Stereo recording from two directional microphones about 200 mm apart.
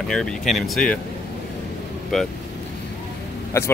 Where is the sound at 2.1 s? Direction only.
Centre (ahead or behind).